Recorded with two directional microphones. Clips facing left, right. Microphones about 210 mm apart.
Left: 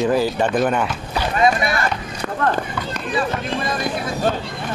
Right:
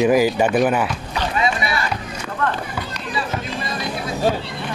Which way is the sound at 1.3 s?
50° left (ahead or behind).